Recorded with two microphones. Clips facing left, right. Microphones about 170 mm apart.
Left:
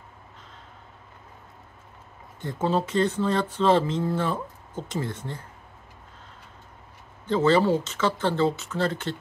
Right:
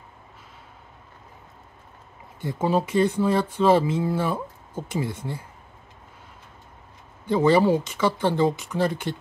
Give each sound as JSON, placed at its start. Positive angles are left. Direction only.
{"t": 2.4, "sound": "speech", "side_deg": -10}
{"t": 7.2, "sound": "speech", "side_deg": -15}